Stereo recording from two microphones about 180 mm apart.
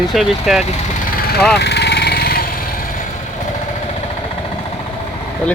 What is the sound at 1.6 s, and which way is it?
Vehicle, 70° left (ahead or behind).